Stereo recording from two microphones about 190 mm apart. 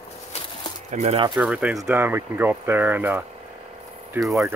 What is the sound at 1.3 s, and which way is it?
Speech, 5° right (ahead or behind).